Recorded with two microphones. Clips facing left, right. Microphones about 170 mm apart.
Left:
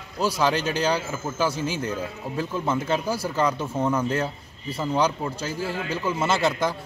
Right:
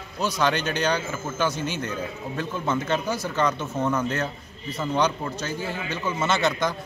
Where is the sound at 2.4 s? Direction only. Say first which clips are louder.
Left 1 dB; 5° left (ahead or behind).